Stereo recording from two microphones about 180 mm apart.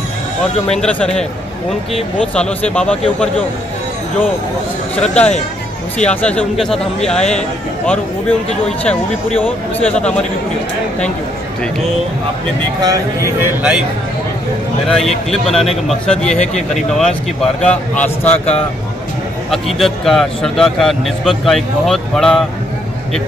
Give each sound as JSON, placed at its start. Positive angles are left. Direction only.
{"t": 0.7, "sound": "a man's voice", "side_deg": 5}
{"t": 5.0, "sound": "a man's voice", "side_deg": 5}
{"t": 12.8, "sound": "speech", "side_deg": -15}
{"t": 13.6, "sound": "speech", "side_deg": -5}
{"t": 14.9, "sound": "a man's voice", "side_deg": 5}